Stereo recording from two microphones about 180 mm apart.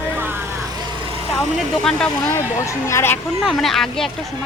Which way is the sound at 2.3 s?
15° left (ahead or behind).